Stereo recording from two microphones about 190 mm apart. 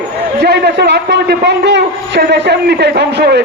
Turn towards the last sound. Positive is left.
turn(degrees=-60)  # may be behind; listen again after turning